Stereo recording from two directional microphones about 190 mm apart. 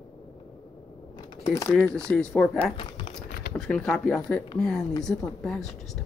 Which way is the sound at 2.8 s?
25° left (ahead or behind).